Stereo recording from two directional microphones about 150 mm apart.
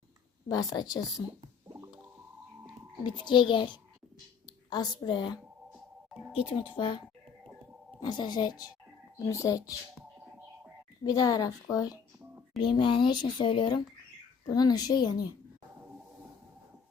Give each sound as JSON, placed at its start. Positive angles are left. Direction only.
{"t": 0.4, "sound": "a woman's voice", "side_deg": 25}
{"t": 3.2, "sound": "a woman's voice", "side_deg": 30}
{"t": 5.7, "sound": "music", "side_deg": 0}
{"t": 6.5, "sound": "speech", "side_deg": 35}
{"t": 8.0, "sound": "a woman's voice", "side_deg": 30}
{"t": 11.0, "sound": "a woman's voice", "side_deg": 25}